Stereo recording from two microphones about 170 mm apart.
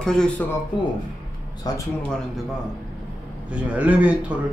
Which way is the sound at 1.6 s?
20° left (ahead or behind).